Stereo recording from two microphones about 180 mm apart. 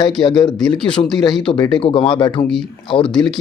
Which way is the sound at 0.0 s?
25° left (ahead or behind).